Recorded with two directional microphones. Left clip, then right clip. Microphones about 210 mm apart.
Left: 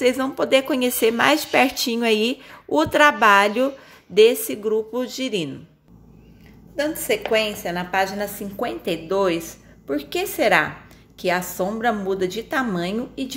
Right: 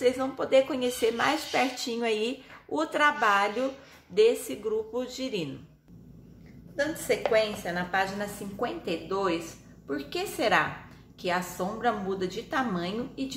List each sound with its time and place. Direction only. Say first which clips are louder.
0.0 s speech: left 6 dB; 45° left (ahead or behind)
7.3 s a woman's voice: left 4 dB; 35° left (ahead or behind)